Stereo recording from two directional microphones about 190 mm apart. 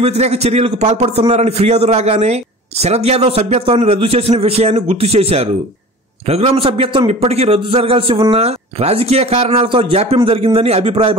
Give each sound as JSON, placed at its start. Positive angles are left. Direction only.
{"t": 0.0, "sound": "a man's voice", "side_deg": -35}